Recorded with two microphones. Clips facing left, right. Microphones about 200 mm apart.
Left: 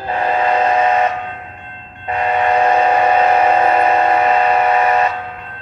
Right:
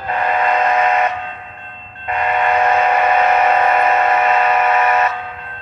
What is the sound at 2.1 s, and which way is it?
Train, 30° left (ahead or behind).